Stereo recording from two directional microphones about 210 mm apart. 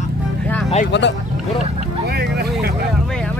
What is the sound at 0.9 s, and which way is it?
Speech, 55° left (ahead or behind).